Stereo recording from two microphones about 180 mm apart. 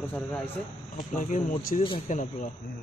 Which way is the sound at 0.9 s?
45° left (ahead or behind).